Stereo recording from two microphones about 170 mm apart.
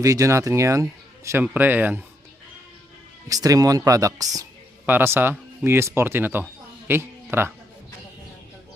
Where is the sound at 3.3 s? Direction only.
20° right (ahead or behind).